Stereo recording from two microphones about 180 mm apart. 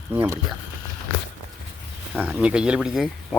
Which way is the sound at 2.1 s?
5° right (ahead or behind).